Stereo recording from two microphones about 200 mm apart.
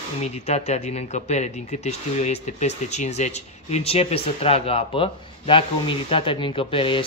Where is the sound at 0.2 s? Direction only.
35° left (ahead or behind).